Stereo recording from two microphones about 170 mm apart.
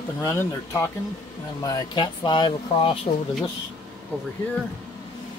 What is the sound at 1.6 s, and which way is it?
Speech, 25° left (ahead or behind).